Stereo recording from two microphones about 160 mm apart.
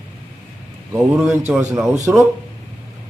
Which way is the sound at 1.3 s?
10° right (ahead or behind).